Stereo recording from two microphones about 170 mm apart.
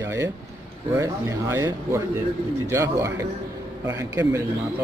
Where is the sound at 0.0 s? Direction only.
15° right (ahead or behind).